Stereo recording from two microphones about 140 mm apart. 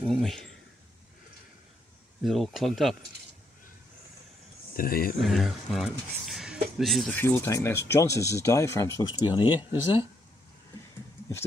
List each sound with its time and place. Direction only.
0.0 s speech: 5° left (ahead or behind)
2.2 s speech: centre (ahead or behind)
4.7 s speech: 90° left
5.2 s speech: centre (ahead or behind)
7.2 s speech: 15° left (ahead or behind)
9.0 s speech: 35° left (ahead or behind)